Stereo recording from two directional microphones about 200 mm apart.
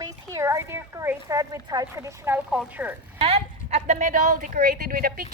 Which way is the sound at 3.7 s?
35° right (ahead or behind).